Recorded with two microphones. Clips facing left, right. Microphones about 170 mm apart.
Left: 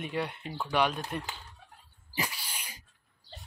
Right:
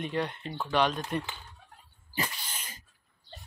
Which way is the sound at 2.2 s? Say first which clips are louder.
Right 1 dB; 10° left (ahead or behind).